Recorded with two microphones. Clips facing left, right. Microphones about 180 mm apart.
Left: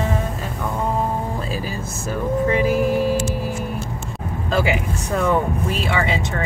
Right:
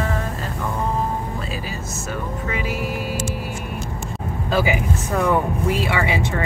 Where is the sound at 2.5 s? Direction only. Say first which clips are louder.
Left 8 dB; 40° left (ahead or behind).